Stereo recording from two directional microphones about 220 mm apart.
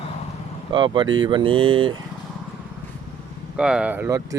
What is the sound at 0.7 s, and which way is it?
Speech, 20° right (ahead or behind).